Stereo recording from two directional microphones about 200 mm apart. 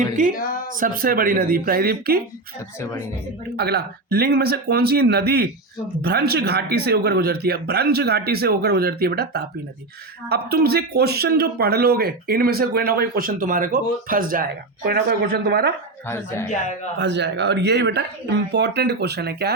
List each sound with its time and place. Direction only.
0.8 s speech: 45° right (ahead or behind)
3.5 s speech: 55° right (ahead or behind)
16.0 s speech: 10° left (ahead or behind)
17.0 s speech: 60° right (ahead or behind)